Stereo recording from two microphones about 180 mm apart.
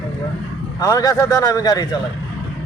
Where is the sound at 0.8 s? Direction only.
20° left (ahead or behind).